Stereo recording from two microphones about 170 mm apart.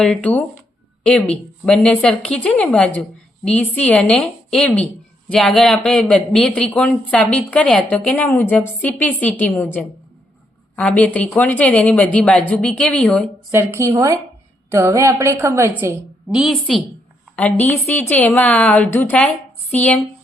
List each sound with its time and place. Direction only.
0.0 s speech: 10° left (ahead or behind)
13.5 s a woman's voice: 15° right (ahead or behind)
16.3 s a woman's voice: centre (ahead or behind)